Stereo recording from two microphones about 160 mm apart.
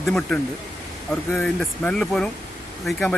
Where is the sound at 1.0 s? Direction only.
15° left (ahead or behind).